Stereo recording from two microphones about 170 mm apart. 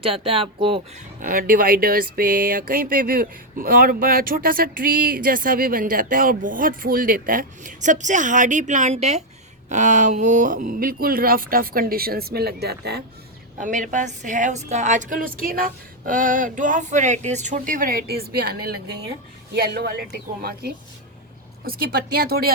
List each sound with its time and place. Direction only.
0.0 s speech: 35° right (ahead or behind)
1.2 s speech: 55° right (ahead or behind); by 13.0 s 70° right (ahead or behind)
13.6 s a woman's voice: 50° right (ahead or behind)